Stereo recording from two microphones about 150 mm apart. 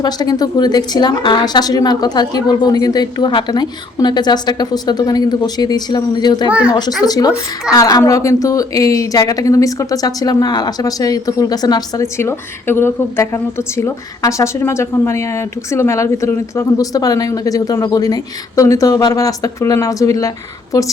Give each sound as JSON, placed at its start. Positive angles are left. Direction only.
{"t": 0.0, "sound": "a woman's voice", "side_deg": 25}